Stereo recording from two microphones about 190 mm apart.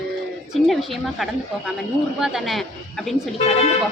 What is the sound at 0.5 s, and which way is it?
A woman's voice, centre (ahead or behind).